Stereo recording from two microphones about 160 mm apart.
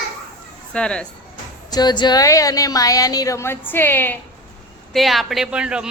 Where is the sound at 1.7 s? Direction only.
25° left (ahead or behind).